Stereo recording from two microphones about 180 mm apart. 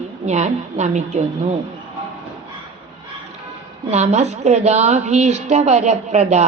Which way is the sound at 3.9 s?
40° right (ahead or behind).